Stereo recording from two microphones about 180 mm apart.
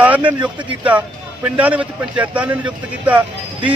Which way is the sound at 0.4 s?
10° right (ahead or behind).